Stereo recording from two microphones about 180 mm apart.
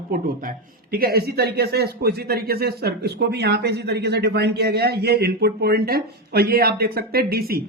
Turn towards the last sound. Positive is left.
turn(degrees=-55)  # may be behind; listen again after turning